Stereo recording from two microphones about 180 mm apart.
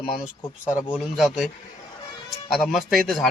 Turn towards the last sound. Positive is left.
turn(degrees=0)  # may be behind; listen again after turning